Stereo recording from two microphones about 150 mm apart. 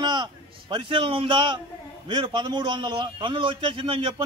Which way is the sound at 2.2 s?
30° right (ahead or behind).